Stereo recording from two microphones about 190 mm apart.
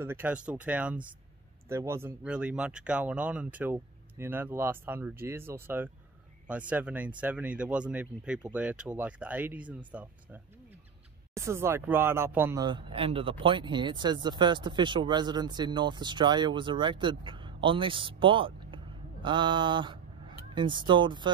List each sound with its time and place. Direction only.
0.0 s speech: 10° right (ahead or behind)
12.6 s speech: 25° right (ahead or behind)